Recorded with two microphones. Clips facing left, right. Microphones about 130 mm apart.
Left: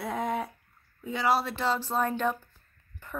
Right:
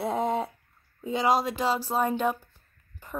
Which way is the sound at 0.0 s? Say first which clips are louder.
Right 4 dB; 25° right (ahead or behind).